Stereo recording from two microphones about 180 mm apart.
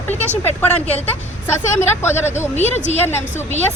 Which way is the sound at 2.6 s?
40° left (ahead or behind).